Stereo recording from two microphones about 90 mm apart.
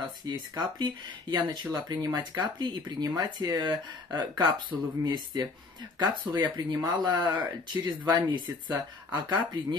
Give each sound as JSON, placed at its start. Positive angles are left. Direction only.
{"t": 0.0, "sound": "speech", "side_deg": -55}
{"t": 4.7, "sound": "speech", "side_deg": -40}
{"t": 5.0, "sound": "speech", "side_deg": -55}